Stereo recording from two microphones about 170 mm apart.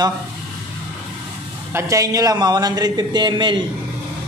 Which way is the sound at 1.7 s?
20° right (ahead or behind).